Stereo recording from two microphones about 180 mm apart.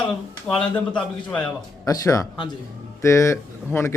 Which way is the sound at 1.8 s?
20° left (ahead or behind).